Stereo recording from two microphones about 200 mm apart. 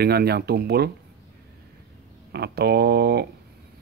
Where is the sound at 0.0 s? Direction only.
50° right (ahead or behind).